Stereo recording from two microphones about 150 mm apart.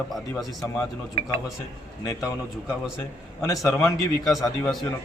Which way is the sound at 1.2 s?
40° left (ahead or behind).